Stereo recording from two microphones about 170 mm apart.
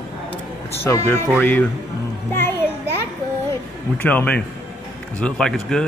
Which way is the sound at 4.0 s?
10° left (ahead or behind).